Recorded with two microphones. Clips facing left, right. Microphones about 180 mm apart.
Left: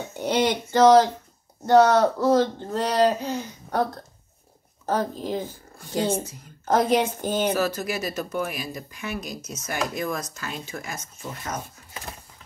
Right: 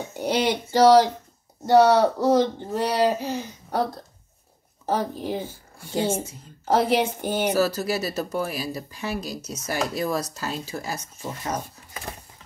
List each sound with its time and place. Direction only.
0.1 s speech: 10° right (ahead or behind)
4.8 s speech: 10° right (ahead or behind)
5.9 s speech: 25° right (ahead or behind)
6.8 s speech: 15° right (ahead or behind)
7.5 s speech: 35° right (ahead or behind)